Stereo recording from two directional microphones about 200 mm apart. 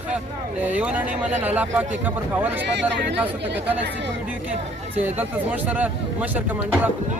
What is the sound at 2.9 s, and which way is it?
Speech, 60° right (ahead or behind).